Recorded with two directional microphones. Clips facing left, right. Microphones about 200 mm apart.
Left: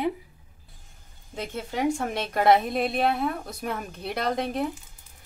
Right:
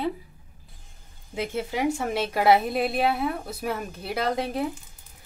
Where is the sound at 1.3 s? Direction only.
10° right (ahead or behind).